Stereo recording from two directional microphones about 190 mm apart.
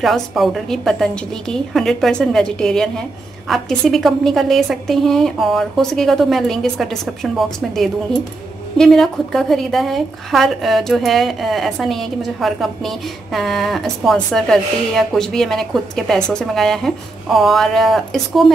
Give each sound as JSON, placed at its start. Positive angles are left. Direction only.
{"t": 0.0, "sound": "a woman's voice", "side_deg": 0}